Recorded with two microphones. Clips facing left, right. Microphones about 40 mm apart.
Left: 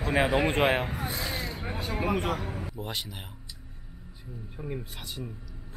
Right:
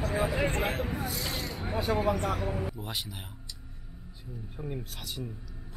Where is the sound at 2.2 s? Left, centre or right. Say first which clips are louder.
Even; centre.